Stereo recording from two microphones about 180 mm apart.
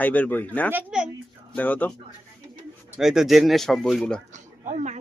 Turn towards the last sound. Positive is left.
turn(degrees=-40)  # may be behind; listen again after turning